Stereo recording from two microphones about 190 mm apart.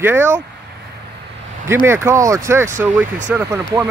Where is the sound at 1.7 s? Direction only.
15° right (ahead or behind).